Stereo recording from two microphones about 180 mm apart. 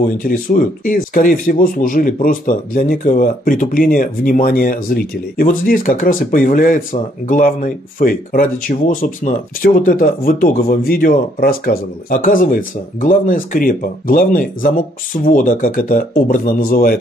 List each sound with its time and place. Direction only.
0.0 s speech: 50° left (ahead or behind)